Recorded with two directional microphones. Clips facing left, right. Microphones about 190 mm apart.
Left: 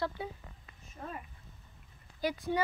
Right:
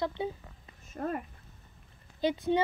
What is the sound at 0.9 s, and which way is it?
Speech, 60° right (ahead or behind).